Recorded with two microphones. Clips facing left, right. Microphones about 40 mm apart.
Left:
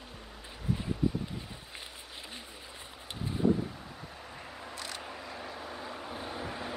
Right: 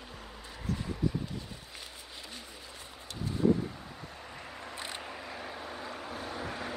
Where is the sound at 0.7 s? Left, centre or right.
Centre.